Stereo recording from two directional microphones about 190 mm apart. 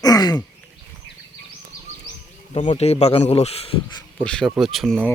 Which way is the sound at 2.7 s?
35° left (ahead or behind).